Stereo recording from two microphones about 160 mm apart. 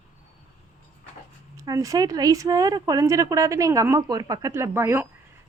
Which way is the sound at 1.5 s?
20° right (ahead or behind).